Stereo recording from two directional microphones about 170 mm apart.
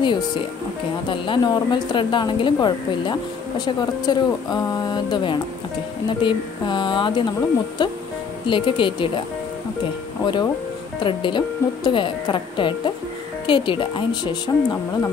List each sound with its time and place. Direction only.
0.0 s speech: 25° left (ahead or behind)
10.2 s speech: 25° left (ahead or behind)